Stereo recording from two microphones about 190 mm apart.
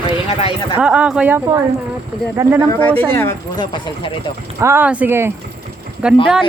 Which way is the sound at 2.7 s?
10° left (ahead or behind).